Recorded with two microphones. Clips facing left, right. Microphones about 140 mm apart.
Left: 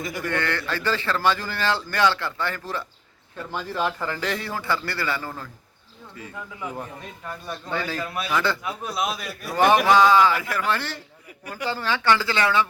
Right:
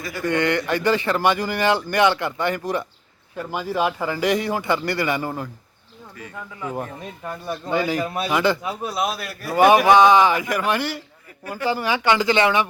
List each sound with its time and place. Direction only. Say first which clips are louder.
0.0 s a man's voice: right 1 dB; 15° left (ahead or behind)
0.3 s speech: right 8 dB; 15° right (ahead or behind)
7.3 s speech: right 5 dB; 10° right (ahead or behind)
8.0 s speech: right 5 dB; 35° right (ahead or behind)
8.3 s speech: right 4 dB; 15° right (ahead or behind)
8.7 s a man's voice: right 3 dB; 5° right (ahead or behind)
9.6 s speech: right 4 dB; 15° right (ahead or behind)